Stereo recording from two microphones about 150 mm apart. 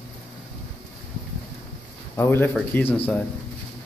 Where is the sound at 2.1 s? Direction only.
15° left (ahead or behind).